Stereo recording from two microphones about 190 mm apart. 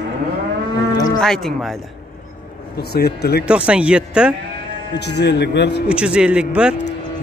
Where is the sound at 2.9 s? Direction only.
55° left (ahead or behind).